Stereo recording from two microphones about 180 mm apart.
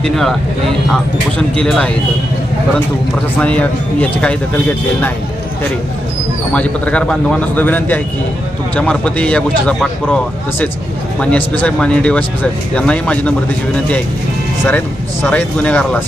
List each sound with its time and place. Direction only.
0.0 s speech: centre (ahead or behind)
1.4 s speech: 5° left (ahead or behind)
3.3 s speech: 5° left (ahead or behind)
6.5 s speech: 5° left (ahead or behind)
11.2 s speech: 10° left (ahead or behind)
15.2 s speech: 10° left (ahead or behind)